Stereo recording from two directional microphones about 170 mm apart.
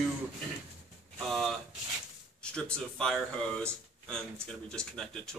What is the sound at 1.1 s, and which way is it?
Speech, centre (ahead or behind).